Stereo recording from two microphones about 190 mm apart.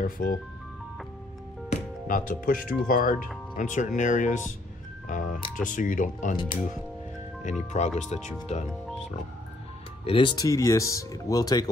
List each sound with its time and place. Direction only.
0.0 s speech: 50° left (ahead or behind)
1.7 s speech: 45° left (ahead or behind)
7.8 s speech: 40° left (ahead or behind)
10.0 s speech: 25° left (ahead or behind)